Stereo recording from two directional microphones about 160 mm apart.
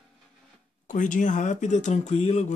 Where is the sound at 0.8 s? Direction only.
55° left (ahead or behind).